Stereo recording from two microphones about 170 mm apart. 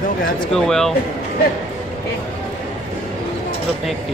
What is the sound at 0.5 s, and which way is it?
Speech, centre (ahead or behind).